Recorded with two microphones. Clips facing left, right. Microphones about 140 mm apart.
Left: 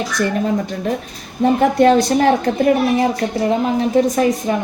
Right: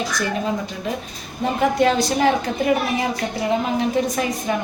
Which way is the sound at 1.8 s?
50° left (ahead or behind).